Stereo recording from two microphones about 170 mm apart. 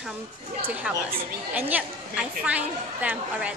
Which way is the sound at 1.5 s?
10° right (ahead or behind).